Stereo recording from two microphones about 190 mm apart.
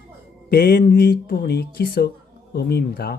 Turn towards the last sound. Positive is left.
turn(degrees=55)  # may be behind; listen again after turning